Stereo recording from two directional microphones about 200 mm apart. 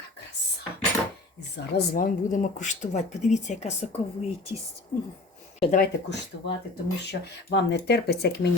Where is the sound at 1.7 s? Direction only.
45° left (ahead or behind).